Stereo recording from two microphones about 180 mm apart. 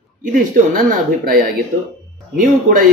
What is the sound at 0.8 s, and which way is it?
Speech, 45° right (ahead or behind).